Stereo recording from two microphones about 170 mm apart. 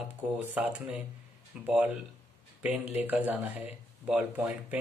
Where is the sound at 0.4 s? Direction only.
10° right (ahead or behind).